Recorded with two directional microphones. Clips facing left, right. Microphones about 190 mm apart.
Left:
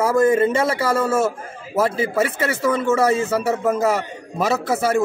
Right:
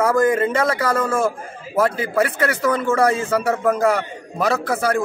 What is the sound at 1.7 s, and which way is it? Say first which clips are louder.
Speech: right 1 dB; 25° left (ahead or behind).